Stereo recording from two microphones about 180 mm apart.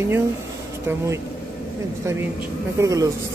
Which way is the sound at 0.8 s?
15° right (ahead or behind).